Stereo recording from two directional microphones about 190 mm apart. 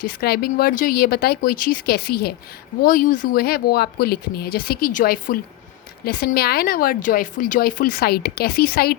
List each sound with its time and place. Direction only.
0.0 s speech: 55° left (ahead or behind)
2.8 s speech: 45° left (ahead or behind)